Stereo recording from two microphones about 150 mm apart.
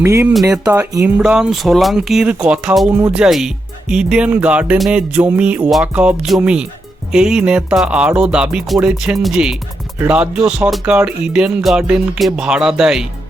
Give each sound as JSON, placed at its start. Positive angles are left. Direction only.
{"t": 0.0, "sound": "speech", "side_deg": -15}